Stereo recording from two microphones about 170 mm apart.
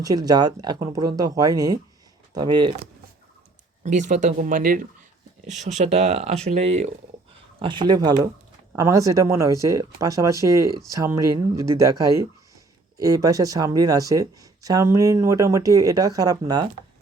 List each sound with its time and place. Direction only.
0.0 s speech: 20° right (ahead or behind)
3.8 s speech: 45° right (ahead or behind)
5.6 s speech: 40° right (ahead or behind)
7.6 s speech: 30° right (ahead or behind)